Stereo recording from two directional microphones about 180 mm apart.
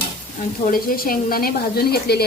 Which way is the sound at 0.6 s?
50° left (ahead or behind).